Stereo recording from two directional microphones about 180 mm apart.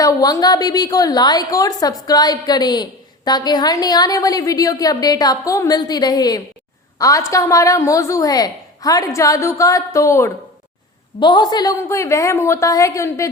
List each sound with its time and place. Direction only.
0.0 s a woman's voice: 20° left (ahead or behind)